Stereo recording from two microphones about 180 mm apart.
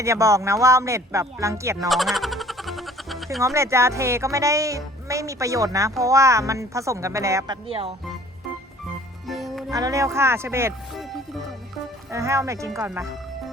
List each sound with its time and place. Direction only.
0.0 s speech: 15° right (ahead or behind)
1.9 s frog: centre (ahead or behind)
3.4 s speech: 15° right (ahead or behind); by 7.9 s 30° right (ahead or behind)
9.2 s music: centre (ahead or behind)
9.7 s speech: 20° right (ahead or behind)
12.1 s speech: 15° right (ahead or behind)